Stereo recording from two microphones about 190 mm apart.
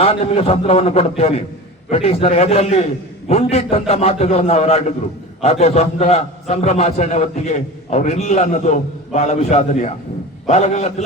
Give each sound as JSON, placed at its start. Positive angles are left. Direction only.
{"t": 0.0, "sound": "a man's voice", "side_deg": 30}